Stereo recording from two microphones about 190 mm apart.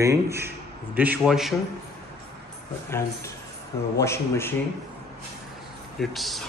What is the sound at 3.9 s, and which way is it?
Speech, 15° left (ahead or behind).